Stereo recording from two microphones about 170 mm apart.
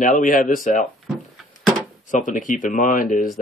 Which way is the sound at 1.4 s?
Centre (ahead or behind).